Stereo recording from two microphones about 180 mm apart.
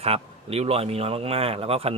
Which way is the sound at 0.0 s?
35° right (ahead or behind).